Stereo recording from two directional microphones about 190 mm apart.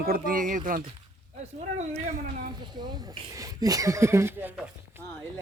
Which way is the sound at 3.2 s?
20° right (ahead or behind).